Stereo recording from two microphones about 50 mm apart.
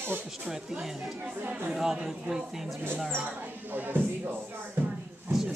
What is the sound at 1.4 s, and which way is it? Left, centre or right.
Speech, right.